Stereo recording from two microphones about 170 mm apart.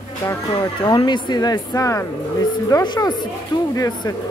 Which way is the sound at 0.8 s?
25° left (ahead or behind).